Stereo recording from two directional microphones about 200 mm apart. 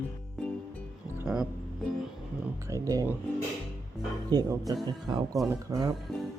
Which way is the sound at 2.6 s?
15° right (ahead or behind).